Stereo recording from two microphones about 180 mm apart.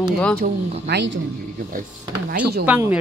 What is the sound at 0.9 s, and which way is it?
Speech, 70° right (ahead or behind).